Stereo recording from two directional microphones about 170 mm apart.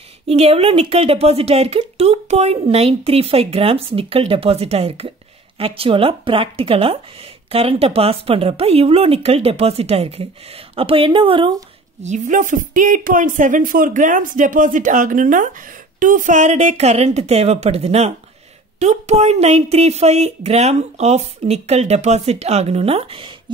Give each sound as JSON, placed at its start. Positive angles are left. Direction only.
{"t": 0.3, "sound": "speech", "side_deg": -35}
{"t": 12.0, "sound": "speech", "side_deg": -45}